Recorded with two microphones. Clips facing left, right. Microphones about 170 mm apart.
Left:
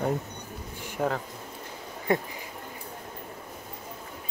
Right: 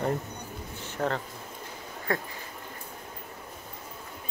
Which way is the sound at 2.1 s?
20° left (ahead or behind).